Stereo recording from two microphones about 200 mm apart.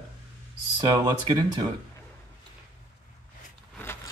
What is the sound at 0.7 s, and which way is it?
Speech, 20° right (ahead or behind).